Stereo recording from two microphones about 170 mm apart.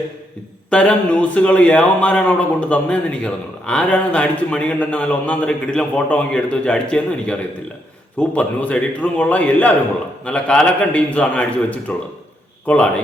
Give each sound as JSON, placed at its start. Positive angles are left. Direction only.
{"t": 0.7, "sound": "a man's voice", "side_deg": 5}